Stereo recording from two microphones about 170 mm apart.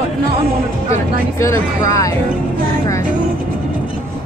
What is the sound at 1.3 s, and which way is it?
Speech, 15° left (ahead or behind).